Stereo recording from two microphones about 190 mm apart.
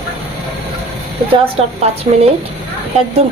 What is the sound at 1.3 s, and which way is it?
A woman's voice, 30° right (ahead or behind).